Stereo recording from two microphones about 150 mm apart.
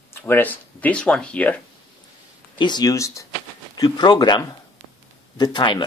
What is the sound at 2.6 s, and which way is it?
Speech, 25° left (ahead or behind).